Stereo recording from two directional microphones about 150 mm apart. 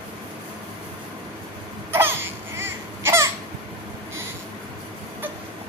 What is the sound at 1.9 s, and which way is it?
Cough, 15° right (ahead or behind).